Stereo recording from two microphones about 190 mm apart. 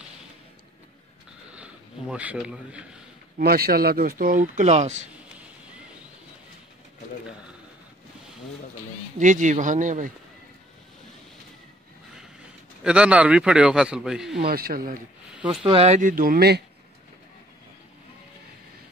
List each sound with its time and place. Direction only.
1.5 s a sound: 5° right (ahead or behind)
3.3 s speech: 55° right (ahead or behind); by 5.0 s 40° right (ahead or behind)
9.2 s speech: 40° right (ahead or behind)
12.8 s a man's voice: 5° right (ahead or behind)
14.5 s speech: 50° right (ahead or behind)
15.3 s speech: 5° right (ahead or behind)
15.6 s speech: 30° right (ahead or behind); by 16.6 s 55° right (ahead or behind)